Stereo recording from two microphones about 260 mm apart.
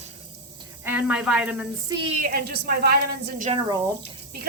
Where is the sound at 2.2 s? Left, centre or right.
Right.